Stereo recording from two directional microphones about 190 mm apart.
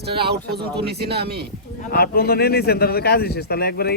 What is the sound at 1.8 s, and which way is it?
A man's voice, 50° left (ahead or behind).